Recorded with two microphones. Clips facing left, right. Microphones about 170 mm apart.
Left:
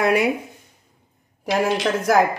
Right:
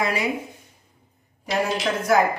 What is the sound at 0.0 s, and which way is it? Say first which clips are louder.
Speech: left 6 dB; 60° left (ahead or behind).